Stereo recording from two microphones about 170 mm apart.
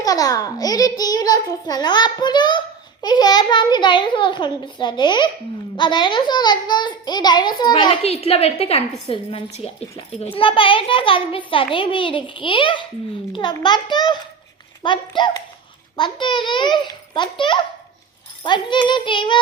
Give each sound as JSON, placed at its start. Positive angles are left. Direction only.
{"t": 0.0, "sound": "a child's voice", "side_deg": 20}